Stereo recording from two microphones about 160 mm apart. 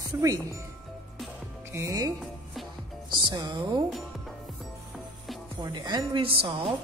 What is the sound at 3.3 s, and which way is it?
Speech, 25° right (ahead or behind).